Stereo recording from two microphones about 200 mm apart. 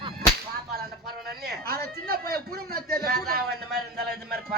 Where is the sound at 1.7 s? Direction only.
50° right (ahead or behind).